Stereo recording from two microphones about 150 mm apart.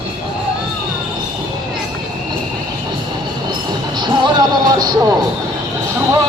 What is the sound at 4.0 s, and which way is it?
Music, 30° right (ahead or behind).